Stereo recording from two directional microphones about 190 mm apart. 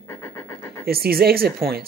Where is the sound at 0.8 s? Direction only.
55° right (ahead or behind).